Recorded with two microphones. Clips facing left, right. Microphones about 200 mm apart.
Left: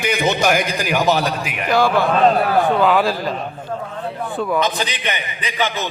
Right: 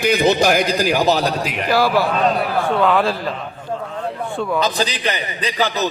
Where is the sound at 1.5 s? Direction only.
Centre (ahead or behind).